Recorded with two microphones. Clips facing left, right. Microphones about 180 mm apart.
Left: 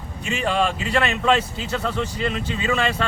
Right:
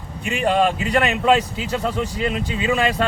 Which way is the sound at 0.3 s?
15° right (ahead or behind).